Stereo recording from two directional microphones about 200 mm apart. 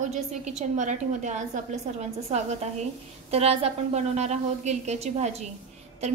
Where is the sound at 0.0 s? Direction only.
35° right (ahead or behind).